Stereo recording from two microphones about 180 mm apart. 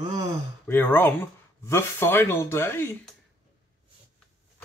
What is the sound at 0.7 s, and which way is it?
Speech, 10° left (ahead or behind).